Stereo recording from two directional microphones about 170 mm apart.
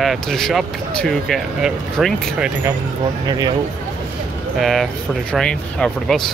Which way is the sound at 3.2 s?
20° right (ahead or behind).